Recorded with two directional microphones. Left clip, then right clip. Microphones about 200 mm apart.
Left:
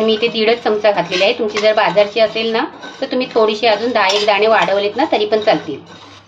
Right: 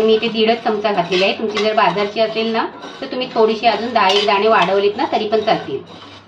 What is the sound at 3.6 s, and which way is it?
Speech, 60° left (ahead or behind).